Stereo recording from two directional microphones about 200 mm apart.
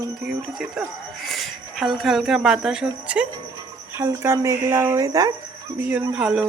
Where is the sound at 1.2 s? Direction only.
Centre (ahead or behind); by 5.3 s 15° right (ahead or behind).